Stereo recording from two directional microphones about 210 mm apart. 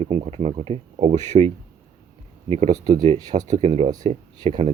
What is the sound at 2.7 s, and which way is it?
Speech, 20° right (ahead or behind).